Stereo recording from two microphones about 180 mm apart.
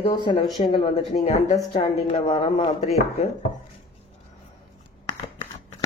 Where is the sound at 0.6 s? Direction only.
35° left (ahead or behind).